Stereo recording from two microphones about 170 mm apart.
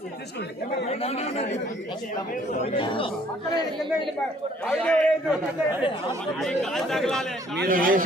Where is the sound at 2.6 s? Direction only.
30° left (ahead or behind).